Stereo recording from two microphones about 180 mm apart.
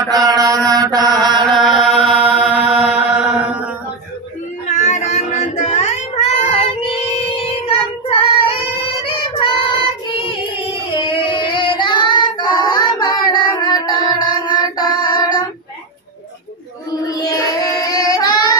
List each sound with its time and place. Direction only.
0.1 s mantra: 20° right (ahead or behind)
1.4 s chant: centre (ahead or behind)
3.2 s mantra: 5° right (ahead or behind)
4.6 s child singing: 40° left (ahead or behind); by 15.4 s 20° left (ahead or behind)
17.0 s child singing: 20° left (ahead or behind)